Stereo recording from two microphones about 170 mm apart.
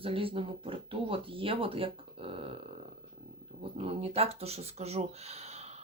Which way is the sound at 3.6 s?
35° right (ahead or behind).